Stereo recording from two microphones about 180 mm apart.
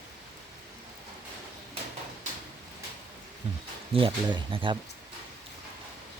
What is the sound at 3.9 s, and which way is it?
Speech, 30° right (ahead or behind).